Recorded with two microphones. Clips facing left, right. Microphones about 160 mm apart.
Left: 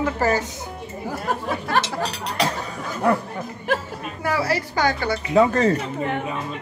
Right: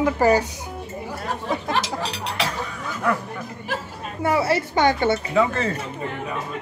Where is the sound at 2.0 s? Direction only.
45° left (ahead or behind).